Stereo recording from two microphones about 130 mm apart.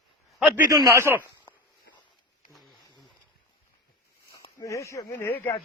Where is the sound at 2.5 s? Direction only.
Centre (ahead or behind).